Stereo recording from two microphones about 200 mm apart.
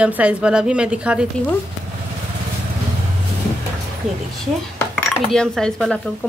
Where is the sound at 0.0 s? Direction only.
5° right (ahead or behind).